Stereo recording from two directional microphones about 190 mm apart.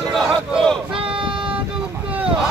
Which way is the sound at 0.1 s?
Centre (ahead or behind).